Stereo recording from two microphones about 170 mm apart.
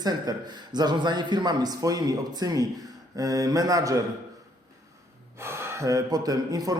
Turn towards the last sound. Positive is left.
turn(degrees=-20)  # may be behind; listen again after turning